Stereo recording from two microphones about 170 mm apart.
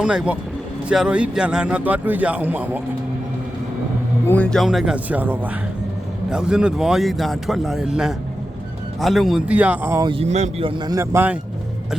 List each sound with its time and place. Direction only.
0.0 s a man's voice: 5° right (ahead or behind)
4.3 s a man's voice: 5° left (ahead or behind); by 10.1 s 15° right (ahead or behind)
10.1 s speech: 40° right (ahead or behind)
10.8 s a man's voice: 15° right (ahead or behind)